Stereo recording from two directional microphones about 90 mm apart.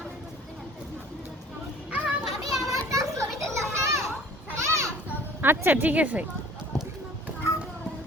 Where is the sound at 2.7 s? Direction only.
40° right (ahead or behind).